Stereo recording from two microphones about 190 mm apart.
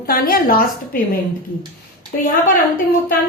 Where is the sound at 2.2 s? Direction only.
45° left (ahead or behind).